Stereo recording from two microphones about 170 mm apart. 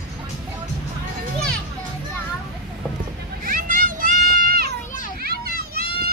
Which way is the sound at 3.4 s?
55° right (ahead or behind).